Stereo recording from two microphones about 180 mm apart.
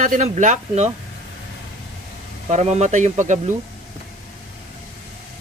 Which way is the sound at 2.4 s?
40° right (ahead or behind).